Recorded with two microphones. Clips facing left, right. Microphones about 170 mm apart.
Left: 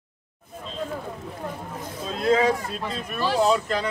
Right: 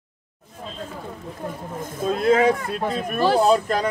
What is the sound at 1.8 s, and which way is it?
Speech, 50° right (ahead or behind).